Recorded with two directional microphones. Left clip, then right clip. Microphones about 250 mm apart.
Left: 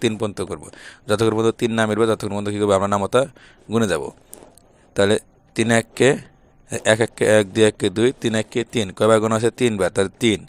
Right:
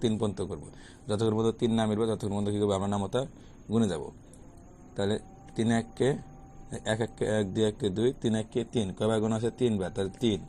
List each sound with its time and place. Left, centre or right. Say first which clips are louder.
0.0 s a man's voice: left 8 dB; left